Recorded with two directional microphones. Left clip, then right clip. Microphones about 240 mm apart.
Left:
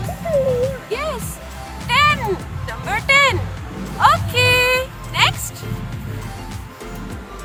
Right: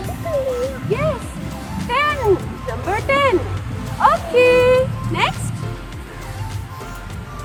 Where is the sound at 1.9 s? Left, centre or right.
Left.